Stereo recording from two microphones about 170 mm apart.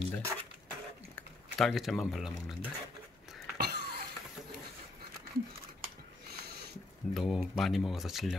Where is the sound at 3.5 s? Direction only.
75° right (ahead or behind).